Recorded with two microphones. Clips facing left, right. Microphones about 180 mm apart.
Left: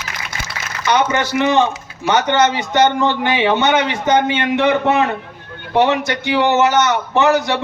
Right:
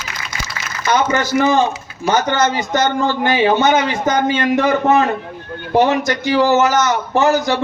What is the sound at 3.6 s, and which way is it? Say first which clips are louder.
Speech: right 1 dB; 65° left (ahead or behind).